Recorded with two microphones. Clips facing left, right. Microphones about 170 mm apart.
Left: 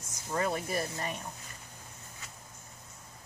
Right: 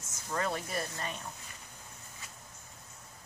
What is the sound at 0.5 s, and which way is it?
Speech, 5° left (ahead or behind).